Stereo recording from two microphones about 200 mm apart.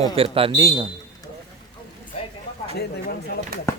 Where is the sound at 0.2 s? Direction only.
25° right (ahead or behind).